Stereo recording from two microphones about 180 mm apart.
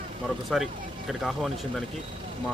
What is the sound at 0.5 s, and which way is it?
Speech, centre (ahead or behind).